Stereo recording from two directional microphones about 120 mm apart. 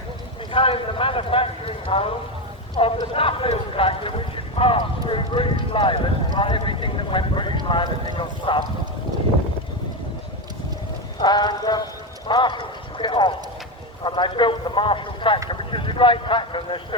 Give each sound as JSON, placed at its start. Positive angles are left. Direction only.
{"t": 0.5, "sound": "clip-clop", "side_deg": 50}
{"t": 2.7, "sound": "speech", "side_deg": 50}
{"t": 11.2, "sound": "speech", "side_deg": 40}
{"t": 12.3, "sound": "clip-clop", "side_deg": 40}
{"t": 14.0, "sound": "speech", "side_deg": 40}